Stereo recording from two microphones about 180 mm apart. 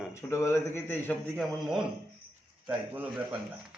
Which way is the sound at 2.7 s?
10° right (ahead or behind).